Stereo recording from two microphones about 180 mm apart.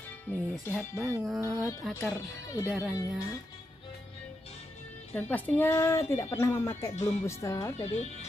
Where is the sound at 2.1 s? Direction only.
15° left (ahead or behind).